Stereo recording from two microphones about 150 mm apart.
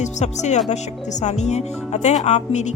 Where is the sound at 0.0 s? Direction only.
50° left (ahead or behind).